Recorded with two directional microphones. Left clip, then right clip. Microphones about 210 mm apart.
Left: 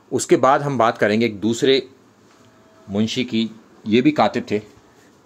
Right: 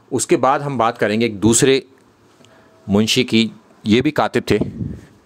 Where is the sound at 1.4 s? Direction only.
40° right (ahead or behind).